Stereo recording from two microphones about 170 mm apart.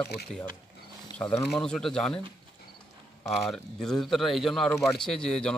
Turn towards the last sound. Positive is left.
turn(degrees=5)  # may be behind; listen again after turning